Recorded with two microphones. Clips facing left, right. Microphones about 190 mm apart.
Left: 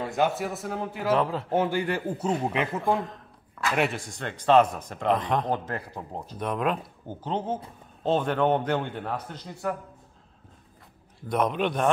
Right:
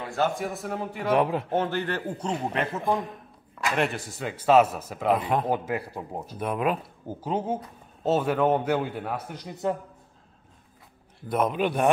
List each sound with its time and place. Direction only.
0.0 s a sound: 20° left (ahead or behind)
0.3 s a man's voice: 5° left (ahead or behind)
1.1 s speech: 15° right (ahead or behind)
1.5 s a man's voice: 10° left (ahead or behind)
2.8 s a sound: 15° right (ahead or behind)
3.7 s speech: centre (ahead or behind); by 9.8 s 20° right (ahead or behind)
11.2 s a man's voice: 5° right (ahead or behind)